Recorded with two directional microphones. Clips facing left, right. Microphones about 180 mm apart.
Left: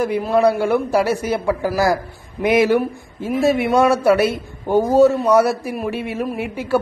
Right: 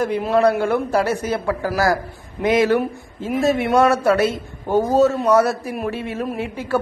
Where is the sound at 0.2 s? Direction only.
5° left (ahead or behind).